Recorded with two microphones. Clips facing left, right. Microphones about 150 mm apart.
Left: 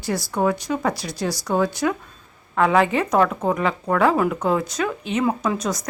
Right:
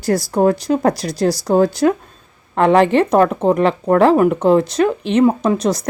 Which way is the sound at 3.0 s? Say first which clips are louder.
Right 6 dB; 30° right (ahead or behind).